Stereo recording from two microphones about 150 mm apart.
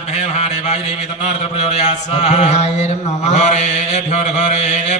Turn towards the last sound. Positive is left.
turn(degrees=45)  # may be behind; listen again after turning